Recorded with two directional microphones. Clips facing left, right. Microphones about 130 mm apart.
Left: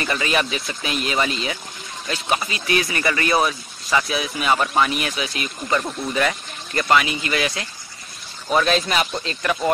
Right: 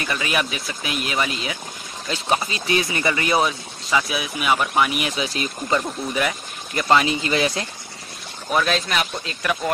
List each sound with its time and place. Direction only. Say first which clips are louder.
0.0 s speech: left 2 dB; 5° right (ahead or behind)
2.0 s speech: right 1 dB; 25° right (ahead or behind)
5.1 s speech: right 2 dB; 30° right (ahead or behind)
6.1 s speech: left 3 dB; 10° right (ahead or behind)
6.8 s speech: right 1 dB; 30° right (ahead or behind)
8.5 s speech: left 2 dB; centre (ahead or behind)